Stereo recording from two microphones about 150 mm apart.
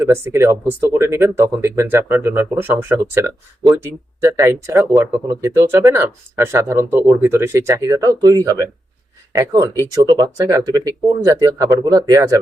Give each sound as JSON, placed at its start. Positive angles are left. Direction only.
{"t": 0.0, "sound": "speech", "side_deg": -20}